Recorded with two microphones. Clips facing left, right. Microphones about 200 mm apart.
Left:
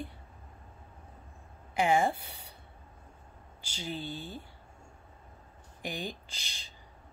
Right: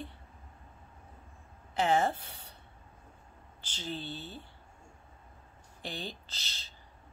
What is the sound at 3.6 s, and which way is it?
Speech, 10° left (ahead or behind).